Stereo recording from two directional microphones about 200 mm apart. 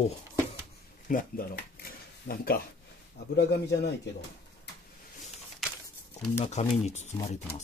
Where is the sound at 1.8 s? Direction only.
50° left (ahead or behind).